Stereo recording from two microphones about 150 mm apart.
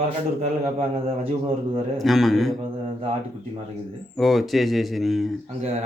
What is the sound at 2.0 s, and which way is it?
Speech, centre (ahead or behind).